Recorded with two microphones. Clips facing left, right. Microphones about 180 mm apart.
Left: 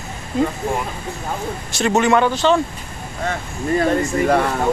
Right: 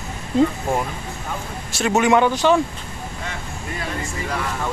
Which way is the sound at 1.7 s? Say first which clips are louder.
Left 1 dB; 5° right (ahead or behind).